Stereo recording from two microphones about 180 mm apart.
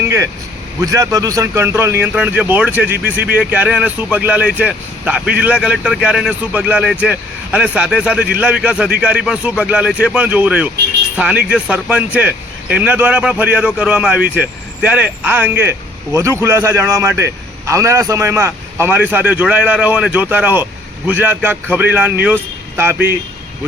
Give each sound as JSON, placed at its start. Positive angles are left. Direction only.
{"t": 0.0, "sound": "vehicle", "side_deg": -15}
{"t": 0.8, "sound": "speech", "side_deg": -20}